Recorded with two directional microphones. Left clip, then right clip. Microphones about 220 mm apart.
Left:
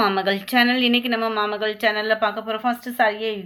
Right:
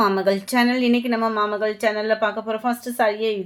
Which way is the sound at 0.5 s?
35° right (ahead or behind).